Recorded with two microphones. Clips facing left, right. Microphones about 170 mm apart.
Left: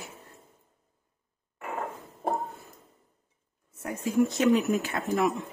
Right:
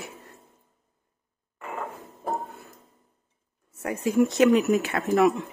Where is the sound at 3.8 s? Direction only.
75° right (ahead or behind).